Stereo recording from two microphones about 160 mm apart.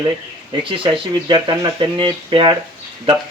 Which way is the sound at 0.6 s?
30° right (ahead or behind).